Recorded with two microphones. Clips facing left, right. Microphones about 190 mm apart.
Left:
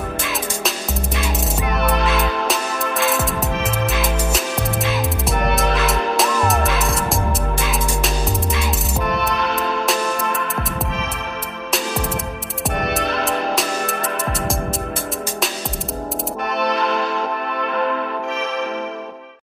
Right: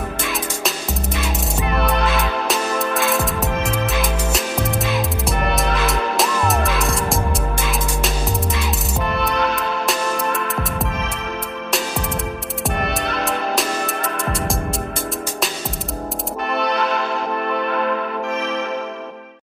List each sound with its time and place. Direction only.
0.3 s music: centre (ahead or behind)
9.8 s music: centre (ahead or behind)
12.6 s music: centre (ahead or behind)